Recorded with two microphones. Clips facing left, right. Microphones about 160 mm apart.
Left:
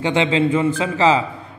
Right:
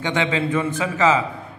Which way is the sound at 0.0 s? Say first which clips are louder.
Left 5 dB; 25° left (ahead or behind).